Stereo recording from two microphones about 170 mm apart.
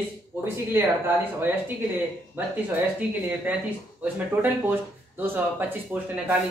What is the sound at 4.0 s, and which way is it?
Speech, 10° right (ahead or behind).